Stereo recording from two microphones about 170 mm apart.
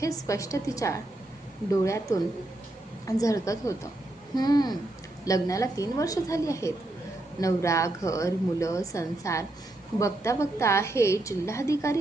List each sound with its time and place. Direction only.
0.0 s a woman's voice: 20° left (ahead or behind)